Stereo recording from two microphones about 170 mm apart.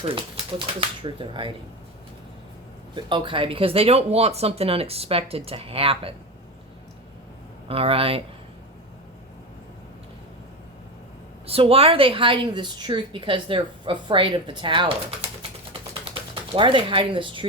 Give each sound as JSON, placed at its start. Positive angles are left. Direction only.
{"t": 0.8, "sound": "a woman's voice", "side_deg": -30}
{"t": 2.9, "sound": "speech", "side_deg": -30}
{"t": 7.7, "sound": "speech", "side_deg": -35}
{"t": 11.4, "sound": "a woman's voice", "side_deg": -35}